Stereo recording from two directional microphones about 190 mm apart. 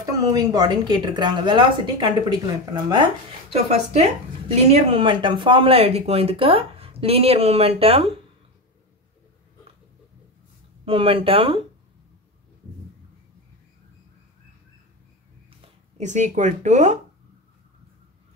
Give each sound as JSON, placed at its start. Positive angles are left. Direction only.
{"t": 0.2, "sound": "speech", "side_deg": -20}
{"t": 3.7, "sound": "speech", "side_deg": -35}
{"t": 10.9, "sound": "speech", "side_deg": -30}
{"t": 16.0, "sound": "speech", "side_deg": -40}